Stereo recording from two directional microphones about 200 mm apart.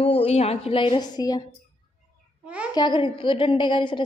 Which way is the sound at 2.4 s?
5° right (ahead or behind).